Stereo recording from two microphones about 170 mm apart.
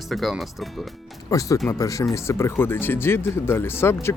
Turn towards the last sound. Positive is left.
turn(degrees=15)  # may be behind; listen again after turning